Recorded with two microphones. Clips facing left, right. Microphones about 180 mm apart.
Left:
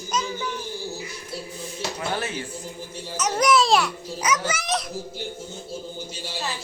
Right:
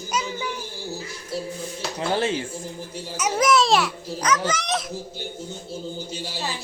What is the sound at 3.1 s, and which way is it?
A child's voice, 5° right (ahead or behind).